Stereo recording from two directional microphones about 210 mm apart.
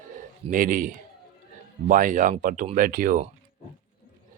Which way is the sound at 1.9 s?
40° right (ahead or behind).